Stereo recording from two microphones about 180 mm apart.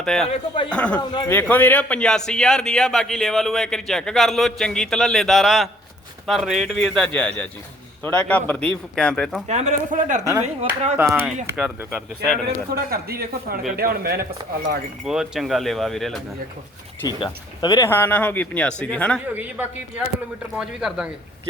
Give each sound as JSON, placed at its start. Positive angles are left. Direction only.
{"t": 0.0, "sound": "speech", "side_deg": 5}
{"t": 0.3, "sound": "speech", "side_deg": 30}
{"t": 0.7, "sound": "a man's voice", "side_deg": 5}
{"t": 9.5, "sound": "a man's voice", "side_deg": -40}
{"t": 10.9, "sound": "speech", "side_deg": -10}
{"t": 12.7, "sound": "speech", "side_deg": -60}
{"t": 15.0, "sound": "a man's voice", "side_deg": 0}
{"t": 17.0, "sound": "speech", "side_deg": 25}
{"t": 19.3, "sound": "a man's voice", "side_deg": -10}